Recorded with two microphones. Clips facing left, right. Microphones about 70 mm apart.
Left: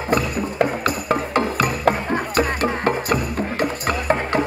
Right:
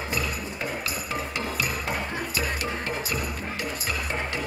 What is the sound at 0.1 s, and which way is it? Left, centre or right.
Music, left.